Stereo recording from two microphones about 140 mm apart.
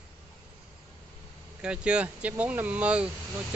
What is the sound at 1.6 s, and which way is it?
Speech, 5° right (ahead or behind).